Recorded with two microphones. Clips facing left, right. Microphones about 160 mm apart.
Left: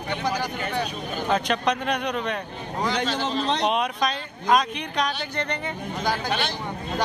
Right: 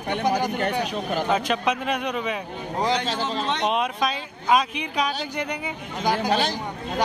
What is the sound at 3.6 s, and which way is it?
Speech, 5° right (ahead or behind).